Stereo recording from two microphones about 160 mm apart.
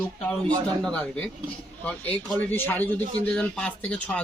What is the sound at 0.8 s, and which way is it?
Speech, 5° left (ahead or behind).